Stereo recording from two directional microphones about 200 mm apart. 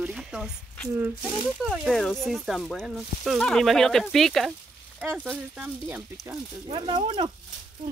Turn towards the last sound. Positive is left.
turn(degrees=-20)  # may be behind; listen again after turning